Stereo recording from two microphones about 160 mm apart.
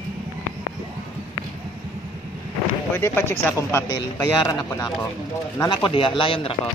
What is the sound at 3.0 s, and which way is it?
A man's voice, 15° left (ahead or behind).